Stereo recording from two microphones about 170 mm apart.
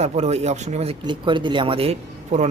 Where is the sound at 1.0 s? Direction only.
30° right (ahead or behind).